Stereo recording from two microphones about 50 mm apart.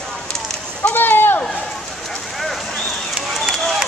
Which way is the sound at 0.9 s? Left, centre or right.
Left.